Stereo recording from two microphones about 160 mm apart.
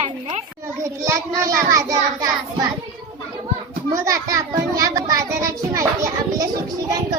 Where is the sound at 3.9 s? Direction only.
20° right (ahead or behind).